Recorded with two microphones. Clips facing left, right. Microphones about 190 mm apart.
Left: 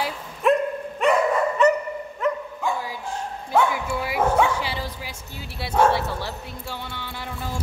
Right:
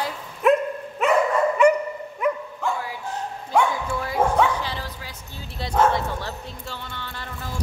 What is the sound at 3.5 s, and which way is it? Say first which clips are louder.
Bow-wow: even; 10° left (ahead or behind).